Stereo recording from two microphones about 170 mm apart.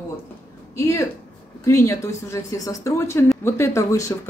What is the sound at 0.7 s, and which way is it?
Speech, 15° left (ahead or behind).